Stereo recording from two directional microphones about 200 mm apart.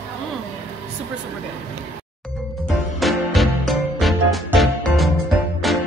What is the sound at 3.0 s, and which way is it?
Music, centre (ahead or behind).